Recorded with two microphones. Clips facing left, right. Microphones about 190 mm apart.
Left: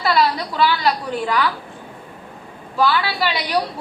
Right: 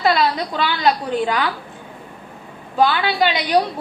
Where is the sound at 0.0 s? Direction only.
25° right (ahead or behind).